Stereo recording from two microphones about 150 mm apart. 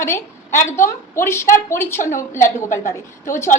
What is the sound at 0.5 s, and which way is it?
Speech, 55° left (ahead or behind).